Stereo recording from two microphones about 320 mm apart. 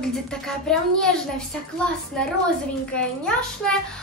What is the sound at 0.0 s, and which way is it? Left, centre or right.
A woman's voice, centre.